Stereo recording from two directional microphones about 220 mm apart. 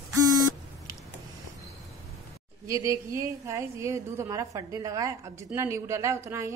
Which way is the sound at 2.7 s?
15° right (ahead or behind).